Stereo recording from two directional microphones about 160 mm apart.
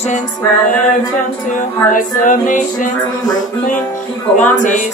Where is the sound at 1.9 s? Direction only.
55° left (ahead or behind).